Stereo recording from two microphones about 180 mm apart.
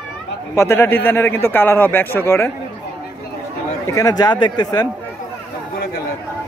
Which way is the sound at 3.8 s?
20° left (ahead or behind).